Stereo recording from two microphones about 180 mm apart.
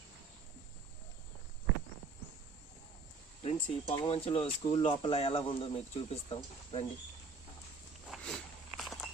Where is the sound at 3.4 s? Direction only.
35° left (ahead or behind).